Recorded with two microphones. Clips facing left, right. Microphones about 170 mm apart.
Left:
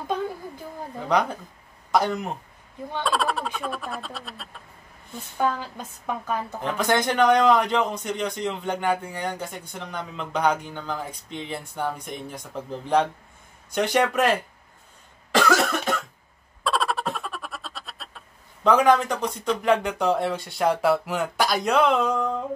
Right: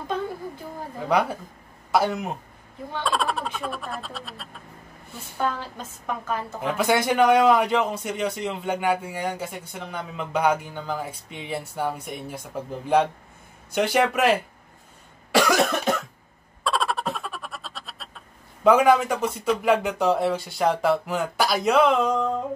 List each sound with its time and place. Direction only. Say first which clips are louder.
1.0 s speech: right 1 dB; 5° right (ahead or behind)
6.6 s a man's voice: right 1 dB; 5° right (ahead or behind)
15.3 s cough: right 1 dB; 15° right (ahead or behind)
16.6 s a sound: even; centre (ahead or behind)